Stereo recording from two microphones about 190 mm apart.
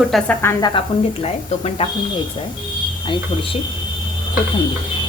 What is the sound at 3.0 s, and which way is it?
Speech, 25° left (ahead or behind).